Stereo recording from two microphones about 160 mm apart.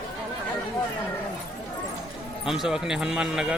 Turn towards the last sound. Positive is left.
turn(degrees=-5)  # may be behind; listen again after turning